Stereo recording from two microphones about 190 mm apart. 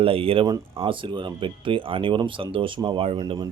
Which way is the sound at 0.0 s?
30° right (ahead or behind).